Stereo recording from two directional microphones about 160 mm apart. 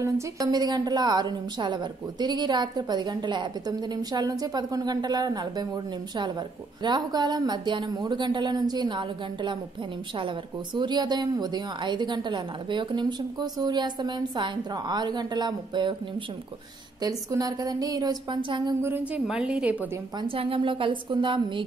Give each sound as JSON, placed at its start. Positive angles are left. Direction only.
{"t": 0.0, "sound": "speech", "side_deg": -20}
{"t": 6.8, "sound": "speech", "side_deg": -25}
{"t": 17.0, "sound": "speech", "side_deg": -20}
{"t": 18.8, "sound": "a woman's voice", "side_deg": -15}
{"t": 20.2, "sound": "a woman's voice", "side_deg": -35}